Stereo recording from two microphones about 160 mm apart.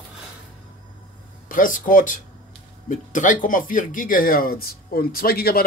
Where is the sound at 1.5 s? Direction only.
55° left (ahead or behind).